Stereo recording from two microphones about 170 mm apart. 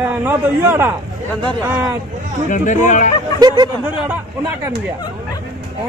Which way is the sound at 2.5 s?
45° left (ahead or behind).